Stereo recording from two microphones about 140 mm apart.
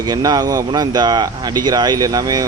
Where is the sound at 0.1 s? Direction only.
30° right (ahead or behind).